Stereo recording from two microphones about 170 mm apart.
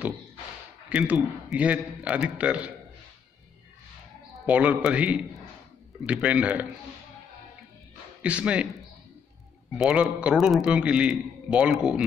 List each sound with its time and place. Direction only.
0.8 s a man's voice: 10° right (ahead or behind)
4.5 s a man's voice: 10° right (ahead or behind)
8.2 s speech: 5° right (ahead or behind)
9.8 s a man's voice: centre (ahead or behind)